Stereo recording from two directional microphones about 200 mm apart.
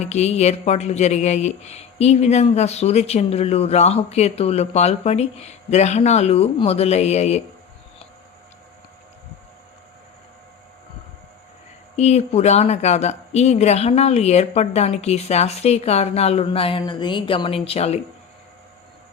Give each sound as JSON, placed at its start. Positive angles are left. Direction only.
{"t": 0.0, "sound": "speech", "side_deg": 35}
{"t": 11.9, "sound": "speech", "side_deg": 35}